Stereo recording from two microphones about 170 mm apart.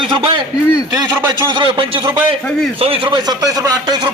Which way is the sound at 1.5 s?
30° right (ahead or behind).